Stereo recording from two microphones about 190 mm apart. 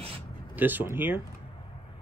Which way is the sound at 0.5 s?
10° right (ahead or behind).